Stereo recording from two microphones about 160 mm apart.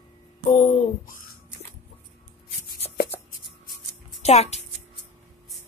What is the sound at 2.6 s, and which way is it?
Chopping, 70° left (ahead or behind).